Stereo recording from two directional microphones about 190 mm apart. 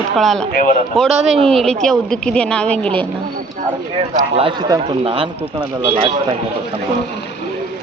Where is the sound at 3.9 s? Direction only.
30° right (ahead or behind).